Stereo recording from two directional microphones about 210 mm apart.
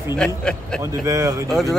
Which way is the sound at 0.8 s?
15° right (ahead or behind).